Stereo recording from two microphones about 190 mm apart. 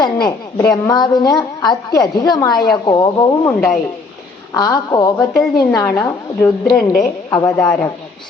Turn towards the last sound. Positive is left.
turn(degrees=10)  # may be behind; listen again after turning